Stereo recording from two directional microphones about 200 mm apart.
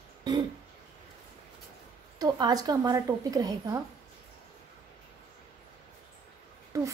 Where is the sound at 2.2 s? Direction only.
20° right (ahead or behind).